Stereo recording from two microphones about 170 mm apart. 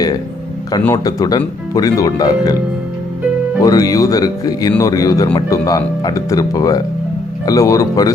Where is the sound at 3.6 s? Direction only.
20° left (ahead or behind).